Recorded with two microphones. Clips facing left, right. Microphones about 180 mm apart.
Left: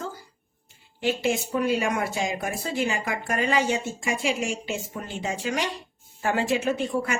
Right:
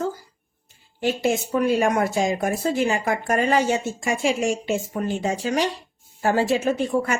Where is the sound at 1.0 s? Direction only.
45° right (ahead or behind).